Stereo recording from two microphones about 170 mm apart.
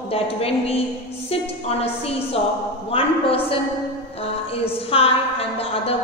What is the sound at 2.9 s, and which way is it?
Speech, 35° left (ahead or behind).